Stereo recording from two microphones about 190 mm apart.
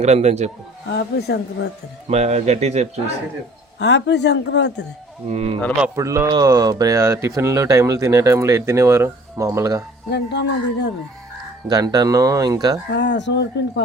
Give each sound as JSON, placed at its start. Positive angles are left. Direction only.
{"t": 0.0, "sound": "speech", "side_deg": -35}
{"t": 0.9, "sound": "speech", "side_deg": 60}
{"t": 2.0, "sound": "speech", "side_deg": -35}
{"t": 3.8, "sound": "speech", "side_deg": 70}
{"t": 5.3, "sound": "speech", "side_deg": -35}
{"t": 6.0, "sound": "speech", "side_deg": -15}
{"t": 10.1, "sound": "speech", "side_deg": 65}
{"t": 11.7, "sound": "speech", "side_deg": -20}
{"t": 12.9, "sound": "speech", "side_deg": 65}